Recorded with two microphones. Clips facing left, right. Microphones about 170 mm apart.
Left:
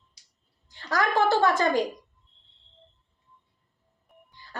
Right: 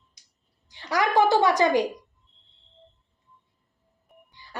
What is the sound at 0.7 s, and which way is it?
Music, 15° right (ahead or behind).